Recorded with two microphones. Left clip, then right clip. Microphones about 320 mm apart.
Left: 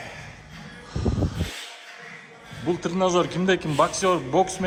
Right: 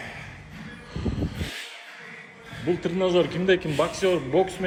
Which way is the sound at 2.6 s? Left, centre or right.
Centre.